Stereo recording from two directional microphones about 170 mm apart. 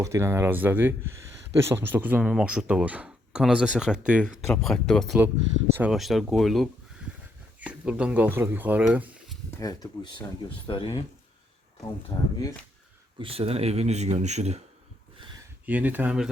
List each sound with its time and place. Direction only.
0.0 s speech: 15° right (ahead or behind)
9.6 s speech: 20° left (ahead or behind)
12.1 s speech: 35° left (ahead or behind)
13.1 s speech: 35° right (ahead or behind)
15.6 s speech: 10° right (ahead or behind)